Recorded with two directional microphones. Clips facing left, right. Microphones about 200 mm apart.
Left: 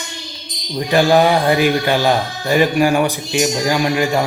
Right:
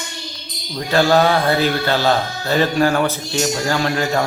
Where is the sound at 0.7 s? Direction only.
15° left (ahead or behind).